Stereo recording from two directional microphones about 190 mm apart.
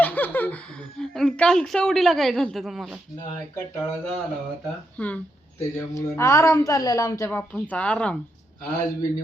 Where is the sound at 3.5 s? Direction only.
10° left (ahead or behind).